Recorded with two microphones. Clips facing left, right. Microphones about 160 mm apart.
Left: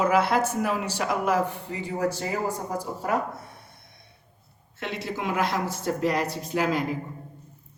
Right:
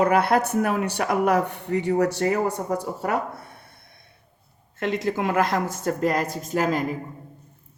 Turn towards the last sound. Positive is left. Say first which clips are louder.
# right 2 dB
turn(degrees=-45)  # may be behind; listen again after turning